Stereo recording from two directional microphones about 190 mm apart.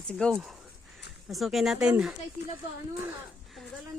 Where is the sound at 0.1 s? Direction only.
5° left (ahead or behind).